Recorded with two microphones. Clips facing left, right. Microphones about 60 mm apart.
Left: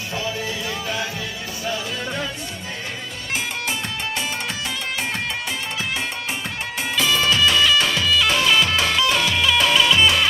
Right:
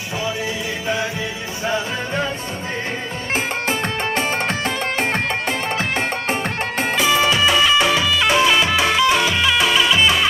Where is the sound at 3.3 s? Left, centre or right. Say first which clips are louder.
Right 4 dB; right.